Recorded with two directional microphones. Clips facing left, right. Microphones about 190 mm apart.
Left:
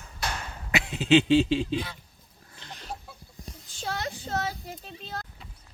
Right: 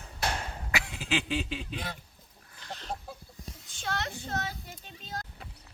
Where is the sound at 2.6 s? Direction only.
25° left (ahead or behind).